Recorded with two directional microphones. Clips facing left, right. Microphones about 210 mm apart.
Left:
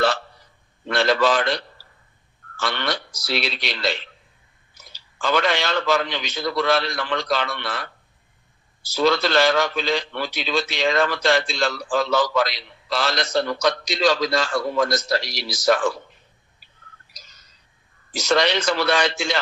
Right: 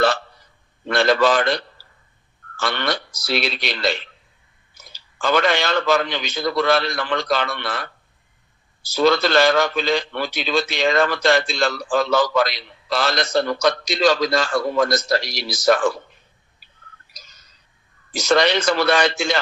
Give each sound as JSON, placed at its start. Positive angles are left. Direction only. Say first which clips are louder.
{"t": 0.9, "sound": "a man's voice", "louder": "right 2 dB", "side_deg": -50}
{"t": 8.9, "sound": "a man's voice", "louder": "right 3 dB", "side_deg": -50}
{"t": 18.1, "sound": "a man's voice", "louder": "right 3 dB", "side_deg": -50}